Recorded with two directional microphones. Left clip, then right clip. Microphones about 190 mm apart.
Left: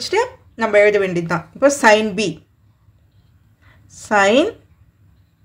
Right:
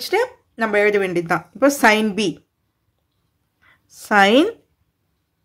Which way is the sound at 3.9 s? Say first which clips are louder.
Even; 45° right (ahead or behind).